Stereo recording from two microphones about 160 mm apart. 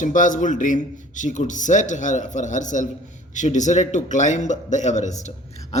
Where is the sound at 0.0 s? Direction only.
55° left (ahead or behind).